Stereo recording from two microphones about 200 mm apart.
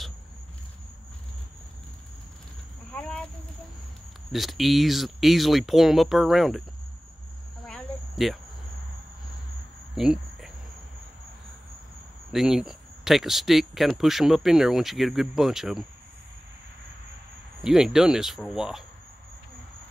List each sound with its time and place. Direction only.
2.9 s a sound: 5° left (ahead or behind)
4.3 s speech: centre (ahead or behind)
7.6 s cricket: centre (ahead or behind)
9.9 s cricket: centre (ahead or behind)
12.3 s speech: centre (ahead or behind)
17.6 s speech: centre (ahead or behind)